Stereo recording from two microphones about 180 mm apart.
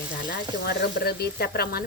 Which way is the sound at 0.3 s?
60° left (ahead or behind).